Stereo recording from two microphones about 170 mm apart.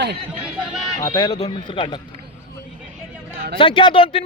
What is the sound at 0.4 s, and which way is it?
Speech, 5° right (ahead or behind).